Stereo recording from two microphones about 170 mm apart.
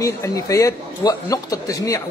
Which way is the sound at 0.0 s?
20° left (ahead or behind).